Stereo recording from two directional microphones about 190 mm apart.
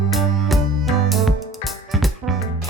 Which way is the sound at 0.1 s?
Centre (ahead or behind).